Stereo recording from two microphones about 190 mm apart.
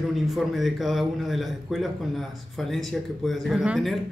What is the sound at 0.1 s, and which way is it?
A man's voice, centre (ahead or behind).